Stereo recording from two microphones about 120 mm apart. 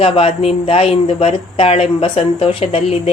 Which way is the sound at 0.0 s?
55° left (ahead or behind).